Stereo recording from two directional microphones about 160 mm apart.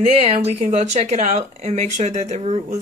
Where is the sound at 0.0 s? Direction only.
40° right (ahead or behind).